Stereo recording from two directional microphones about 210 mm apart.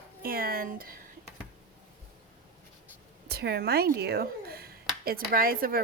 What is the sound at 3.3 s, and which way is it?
A woman's voice, 50° right (ahead or behind).